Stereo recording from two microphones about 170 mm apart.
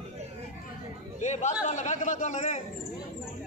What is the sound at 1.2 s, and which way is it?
Chatter, 45° left (ahead or behind).